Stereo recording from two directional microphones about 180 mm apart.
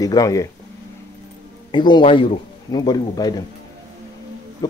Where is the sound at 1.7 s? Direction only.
25° left (ahead or behind).